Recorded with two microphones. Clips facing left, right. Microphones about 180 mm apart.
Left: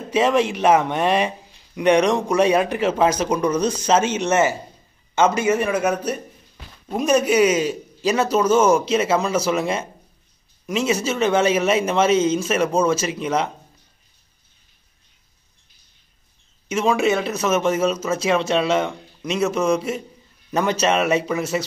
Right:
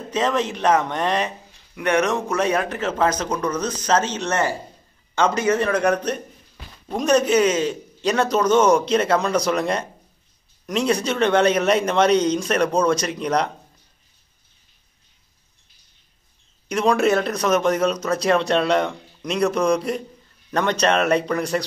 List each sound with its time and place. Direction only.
0.1 s speech: 10° left (ahead or behind)
5.1 s a man's voice: 20° left (ahead or behind)
5.4 s speech: 10° left (ahead or behind)
16.6 s speech: centre (ahead or behind)